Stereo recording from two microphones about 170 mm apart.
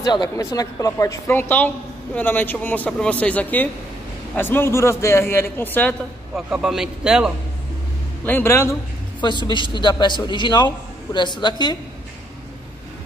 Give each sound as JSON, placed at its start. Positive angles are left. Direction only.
{"t": 0.0, "sound": "a woman's voice", "side_deg": 20}
{"t": 6.3, "sound": "a man's voice", "side_deg": -5}
{"t": 8.3, "sound": "a woman's voice", "side_deg": 10}
{"t": 9.5, "sound": "a man's voice", "side_deg": 25}